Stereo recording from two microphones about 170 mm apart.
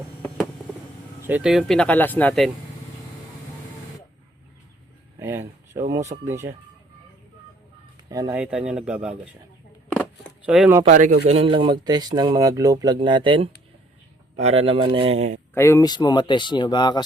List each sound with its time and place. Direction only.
1.3 s speech: 5° right (ahead or behind)
5.2 s a sound: 15° right (ahead or behind)
6.2 s speech: 15° right (ahead or behind)
8.3 s speech: 5° right (ahead or behind)
9.9 s a sound: 10° left (ahead or behind)
10.4 s speech: 5° right (ahead or behind)
10.8 s a man's voice: 50° right (ahead or behind)
11.3 s speech: 35° right (ahead or behind)
15.5 s speech: 15° left (ahead or behind)